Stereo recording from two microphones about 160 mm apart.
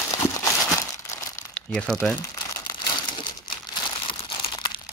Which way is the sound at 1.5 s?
5° left (ahead or behind).